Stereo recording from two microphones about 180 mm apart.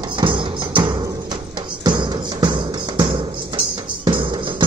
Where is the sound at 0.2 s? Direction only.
25° right (ahead or behind).